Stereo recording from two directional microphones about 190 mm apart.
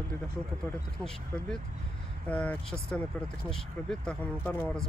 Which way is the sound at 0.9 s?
5° left (ahead or behind).